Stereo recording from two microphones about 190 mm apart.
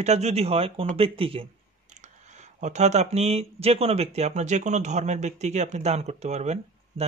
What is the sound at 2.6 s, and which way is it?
Speech, 35° right (ahead or behind).